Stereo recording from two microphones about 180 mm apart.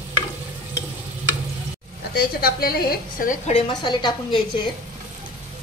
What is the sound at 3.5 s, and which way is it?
A woman's voice, 25° left (ahead or behind).